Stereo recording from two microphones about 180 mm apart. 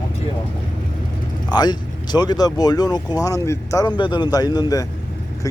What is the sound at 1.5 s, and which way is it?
Speech, 25° left (ahead or behind).